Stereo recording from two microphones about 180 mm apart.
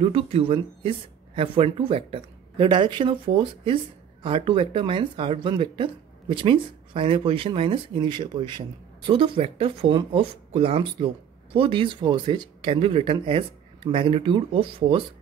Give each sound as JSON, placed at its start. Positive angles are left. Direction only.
{"t": 0.0, "sound": "speech", "side_deg": -30}